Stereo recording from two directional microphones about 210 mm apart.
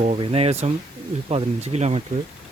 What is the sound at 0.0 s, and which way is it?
Speech, 30° right (ahead or behind).